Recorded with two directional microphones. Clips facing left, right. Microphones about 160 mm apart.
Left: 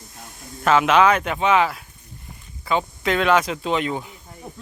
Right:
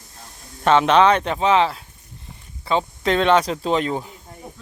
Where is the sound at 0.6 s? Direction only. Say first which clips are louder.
Right 1 dB; 30° right (ahead or behind).